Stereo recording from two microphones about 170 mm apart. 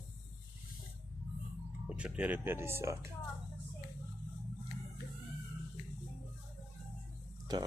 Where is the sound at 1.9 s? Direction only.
5° right (ahead or behind).